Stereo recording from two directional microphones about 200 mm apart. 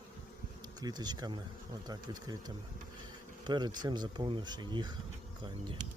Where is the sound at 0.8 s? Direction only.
20° right (ahead or behind).